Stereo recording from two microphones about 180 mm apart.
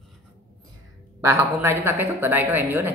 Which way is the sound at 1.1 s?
10° right (ahead or behind).